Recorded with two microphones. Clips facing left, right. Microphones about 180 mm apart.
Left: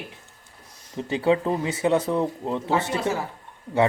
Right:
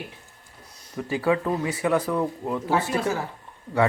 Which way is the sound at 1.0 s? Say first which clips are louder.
Left 2 dB; 25° left (ahead or behind).